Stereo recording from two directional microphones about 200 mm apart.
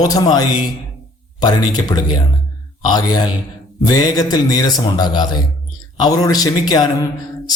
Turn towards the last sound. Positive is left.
turn(degrees=20)  # may be behind; listen again after turning